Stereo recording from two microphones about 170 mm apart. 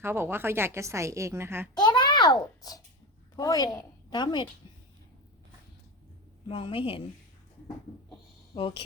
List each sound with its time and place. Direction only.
0.0 s a woman's voice: 15° right (ahead or behind)
1.7 s a child's voice: 25° left (ahead or behind)
6.5 s a woman's voice: 30° left (ahead or behind)
8.5 s a woman's voice: 30° left (ahead or behind)